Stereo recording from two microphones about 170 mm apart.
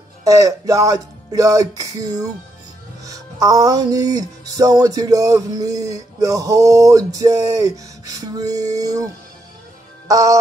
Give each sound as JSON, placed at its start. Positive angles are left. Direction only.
{"t": 0.2, "sound": "music", "side_deg": -20}